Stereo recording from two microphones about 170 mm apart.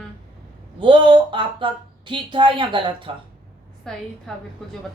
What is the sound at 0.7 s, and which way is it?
Speech, 30° right (ahead or behind).